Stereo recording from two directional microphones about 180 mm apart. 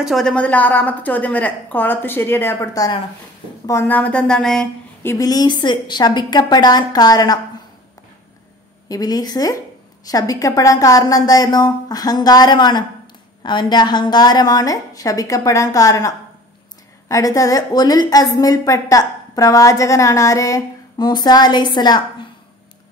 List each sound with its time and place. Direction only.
0.0 s a woman's voice: centre (ahead or behind)
5.1 s a woman's voice: 20° left (ahead or behind)
8.8 s a woman's voice: 20° left (ahead or behind)